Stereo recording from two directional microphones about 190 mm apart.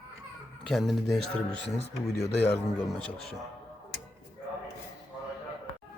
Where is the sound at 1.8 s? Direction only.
35° left (ahead or behind).